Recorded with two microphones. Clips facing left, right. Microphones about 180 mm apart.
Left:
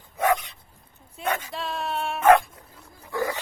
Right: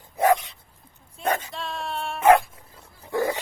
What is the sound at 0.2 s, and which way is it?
Dog, 30° right (ahead or behind).